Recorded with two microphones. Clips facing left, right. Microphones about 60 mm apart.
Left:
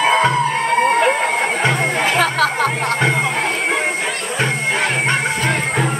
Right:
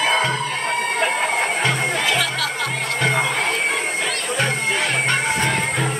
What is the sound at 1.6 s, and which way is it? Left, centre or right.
Music, left.